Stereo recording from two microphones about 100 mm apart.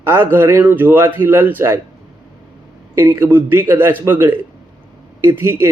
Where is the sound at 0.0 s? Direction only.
25° right (ahead or behind).